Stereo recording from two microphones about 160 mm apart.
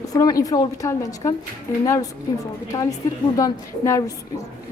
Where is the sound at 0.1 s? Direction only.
25° left (ahead or behind).